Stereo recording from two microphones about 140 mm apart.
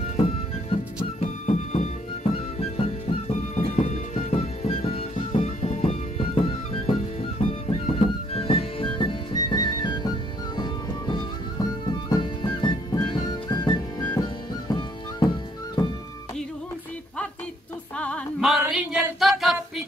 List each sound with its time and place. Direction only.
0.0 s music: 45° left (ahead or behind)
17.9 s music: 10° left (ahead or behind)
18.4 s a sound: 5° right (ahead or behind)